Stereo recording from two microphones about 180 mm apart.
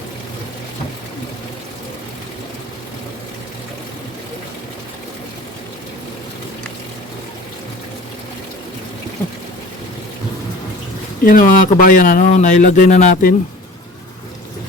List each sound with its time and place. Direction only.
11.2 s a man's voice: 50° left (ahead or behind)